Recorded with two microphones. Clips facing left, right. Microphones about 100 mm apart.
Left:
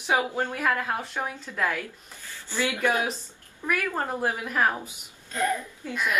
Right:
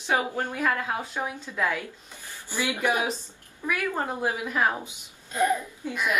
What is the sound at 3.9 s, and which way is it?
A woman's voice, 5° right (ahead or behind).